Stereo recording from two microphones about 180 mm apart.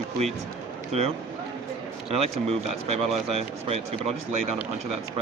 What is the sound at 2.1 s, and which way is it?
Speech, 35° right (ahead or behind).